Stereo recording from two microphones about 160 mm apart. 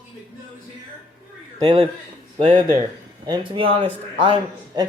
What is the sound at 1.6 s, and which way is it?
A man's voice, 30° right (ahead or behind).